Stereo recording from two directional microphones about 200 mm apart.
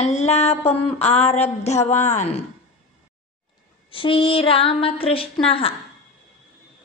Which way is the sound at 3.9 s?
25° left (ahead or behind).